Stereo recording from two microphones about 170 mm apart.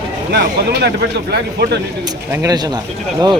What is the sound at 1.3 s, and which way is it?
Speech, 75° right (ahead or behind).